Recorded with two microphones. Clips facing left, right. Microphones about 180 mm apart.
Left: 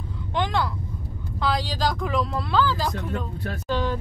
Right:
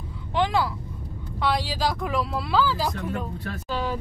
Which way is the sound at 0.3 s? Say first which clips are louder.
Right 2 dB; 5° right (ahead or behind).